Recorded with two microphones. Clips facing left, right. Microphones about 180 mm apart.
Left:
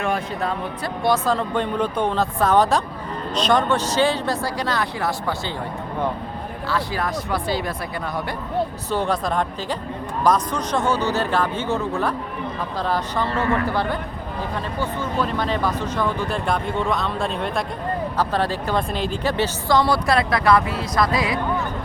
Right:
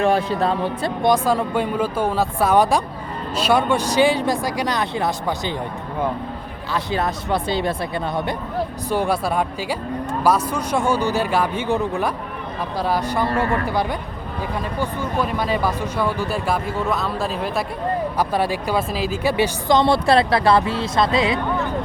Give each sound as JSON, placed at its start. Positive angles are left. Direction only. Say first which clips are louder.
{"t": 0.0, "sound": "speech", "louder": "right 6 dB", "side_deg": -30}
{"t": 1.0, "sound": "speech", "louder": "right 2 dB", "side_deg": -15}
{"t": 6.7, "sound": "speech", "louder": "right 2 dB", "side_deg": -20}
{"t": 8.9, "sound": "speech", "louder": "right 3 dB", "side_deg": -10}